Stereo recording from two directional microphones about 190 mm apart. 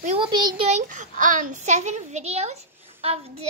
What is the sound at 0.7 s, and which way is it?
A child's voice, 40° right (ahead or behind).